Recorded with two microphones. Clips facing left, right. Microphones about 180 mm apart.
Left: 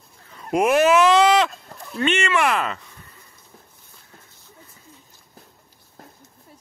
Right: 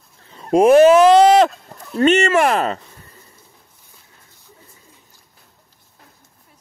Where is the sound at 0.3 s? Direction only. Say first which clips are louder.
Right 8 dB; 30° right (ahead or behind).